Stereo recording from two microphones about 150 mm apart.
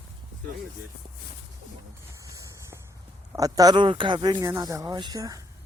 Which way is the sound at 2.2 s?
20° right (ahead or behind).